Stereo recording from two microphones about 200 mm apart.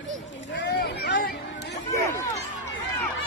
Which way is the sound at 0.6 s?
60° left (ahead or behind).